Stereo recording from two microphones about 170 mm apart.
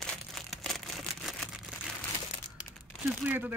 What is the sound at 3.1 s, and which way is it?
Speech, 10° right (ahead or behind).